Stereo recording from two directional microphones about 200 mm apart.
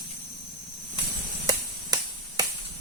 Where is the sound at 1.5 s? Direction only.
20° right (ahead or behind).